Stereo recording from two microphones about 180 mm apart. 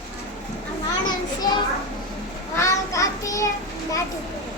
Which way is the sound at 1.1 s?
25° left (ahead or behind).